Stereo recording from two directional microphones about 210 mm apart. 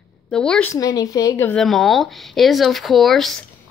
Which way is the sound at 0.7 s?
15° left (ahead or behind).